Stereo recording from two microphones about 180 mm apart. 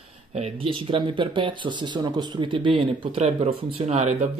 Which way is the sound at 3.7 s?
40° right (ahead or behind).